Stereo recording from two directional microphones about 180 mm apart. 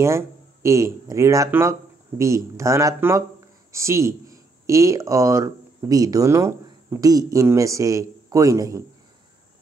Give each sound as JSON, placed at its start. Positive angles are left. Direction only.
{"t": 0.0, "sound": "speech", "side_deg": -15}